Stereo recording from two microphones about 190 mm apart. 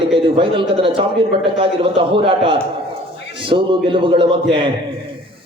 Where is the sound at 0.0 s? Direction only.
25° right (ahead or behind).